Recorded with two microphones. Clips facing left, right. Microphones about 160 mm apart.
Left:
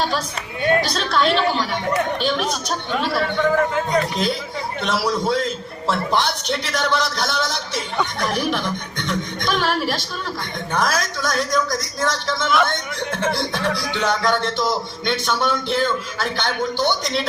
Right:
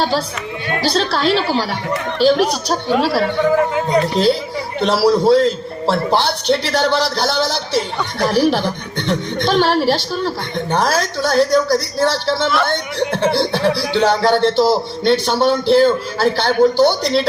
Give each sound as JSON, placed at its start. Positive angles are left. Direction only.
{"t": 0.7, "sound": "speech", "side_deg": -30}